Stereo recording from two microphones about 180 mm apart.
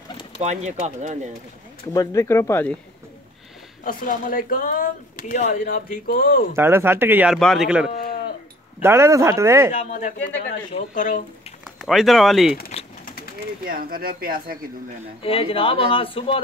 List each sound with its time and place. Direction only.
0.4 s speech: 40° right (ahead or behind)
2.0 s speech: 15° left (ahead or behind)
3.8 s speech: 50° left (ahead or behind)
6.5 s speech: 15° right (ahead or behind)
7.3 s a man's voice: centre (ahead or behind)
8.8 s speech: 15° right (ahead or behind)
9.7 s speech: 45° left (ahead or behind)
11.6 s speech: centre (ahead or behind)
13.7 s speech: 50° right (ahead or behind)
15.2 s speech: 30° left (ahead or behind)